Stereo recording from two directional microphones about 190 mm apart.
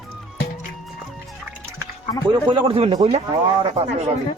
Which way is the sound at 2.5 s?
25° right (ahead or behind).